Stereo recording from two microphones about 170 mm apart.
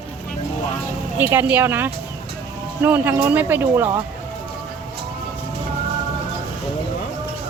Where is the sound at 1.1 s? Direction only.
10° right (ahead or behind).